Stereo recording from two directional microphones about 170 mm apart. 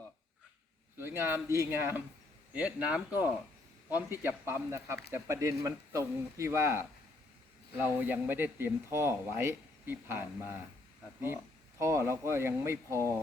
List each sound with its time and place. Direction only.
0.9 s speech: 15° right (ahead or behind)
7.9 s speech: 10° right (ahead or behind)
11.8 s speech: 15° right (ahead or behind)